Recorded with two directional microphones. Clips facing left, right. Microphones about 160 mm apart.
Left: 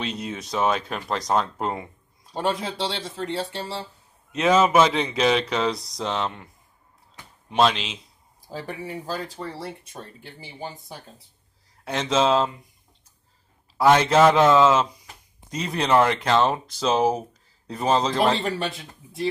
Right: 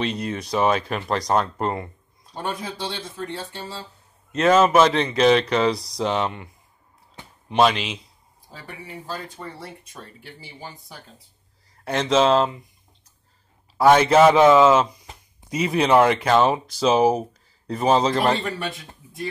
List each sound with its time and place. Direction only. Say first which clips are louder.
0.0 s speech: right 4 dB; 5° left (ahead or behind)
2.8 s speech: left 3 dB; 90° left
3.2 s speech: left 5 dB; 75° left (ahead or behind)
4.3 s speech: right 2 dB; 5° left (ahead or behind)
8.5 s speech: left 7 dB; 35° left (ahead or behind)
10.2 s speech: left 4 dB; 20° left (ahead or behind)
11.8 s speech: right 3 dB; centre (ahead or behind)
13.8 s speech: right 2 dB; 5° right (ahead or behind)